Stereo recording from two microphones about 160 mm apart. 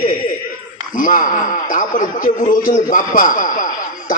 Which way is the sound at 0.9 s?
55° left (ahead or behind).